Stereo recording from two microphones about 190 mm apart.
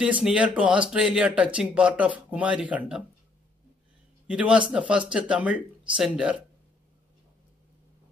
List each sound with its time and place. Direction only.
0.0 s speech: 5° right (ahead or behind)
4.3 s speech: 5° right (ahead or behind)